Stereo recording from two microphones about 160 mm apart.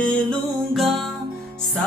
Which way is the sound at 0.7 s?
Centre (ahead or behind).